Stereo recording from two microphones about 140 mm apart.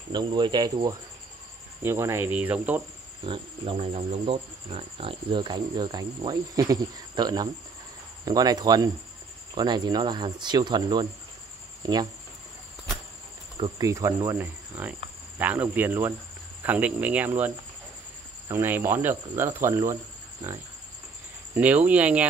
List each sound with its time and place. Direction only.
0.1 s speech: 30° right (ahead or behind)
1.8 s speech: 20° right (ahead or behind)
3.3 s speech: 45° right (ahead or behind)
13.6 s speech: 25° right (ahead or behind)
18.5 s speech: 15° right (ahead or behind)
21.5 s speech: 10° right (ahead or behind)